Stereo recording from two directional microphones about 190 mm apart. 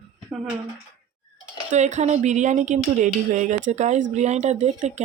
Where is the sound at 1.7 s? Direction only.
40° right (ahead or behind).